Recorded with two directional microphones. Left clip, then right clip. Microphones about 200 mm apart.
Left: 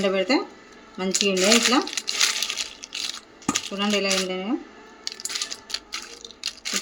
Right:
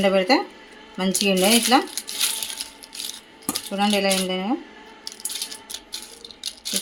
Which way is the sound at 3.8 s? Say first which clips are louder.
Right 4 dB; 30° right (ahead or behind).